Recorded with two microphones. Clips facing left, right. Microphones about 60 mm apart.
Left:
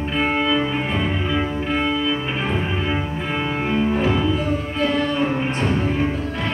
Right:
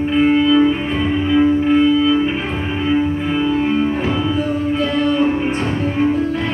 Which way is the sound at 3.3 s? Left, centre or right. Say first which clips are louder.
Right 4 dB; left.